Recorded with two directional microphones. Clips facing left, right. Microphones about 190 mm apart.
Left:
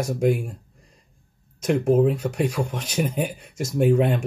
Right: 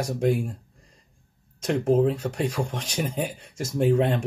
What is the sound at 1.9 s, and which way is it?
Speech, 10° left (ahead or behind).